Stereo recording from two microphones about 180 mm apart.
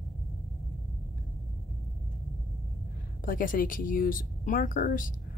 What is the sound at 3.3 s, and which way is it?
Speech, 50° left (ahead or behind).